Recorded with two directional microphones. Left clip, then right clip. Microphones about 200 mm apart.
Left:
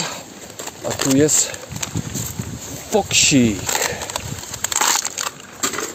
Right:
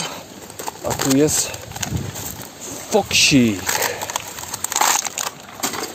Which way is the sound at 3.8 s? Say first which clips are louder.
Right 1 dB; 5° right (ahead or behind).